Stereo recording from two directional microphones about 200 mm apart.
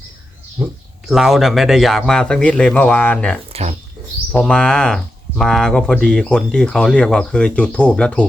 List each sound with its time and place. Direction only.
0.6 s speech: 10° right (ahead or behind); by 3.3 s 5° left (ahead or behind)
3.5 s speech: 35° right (ahead or behind)
4.3 s speech: 5° left (ahead or behind)